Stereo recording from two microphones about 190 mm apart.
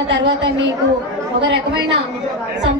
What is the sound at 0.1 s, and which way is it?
A woman's voice, 65° right (ahead or behind).